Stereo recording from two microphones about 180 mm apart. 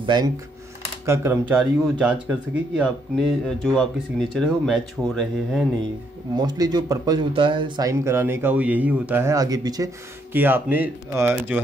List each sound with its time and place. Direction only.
0.0 s speech: 25° right (ahead or behind)
1.0 s speech: 15° right (ahead or behind); by 5.7 s centre (ahead or behind)
6.3 s speech: 20° right (ahead or behind)
10.3 s speech: 10° right (ahead or behind)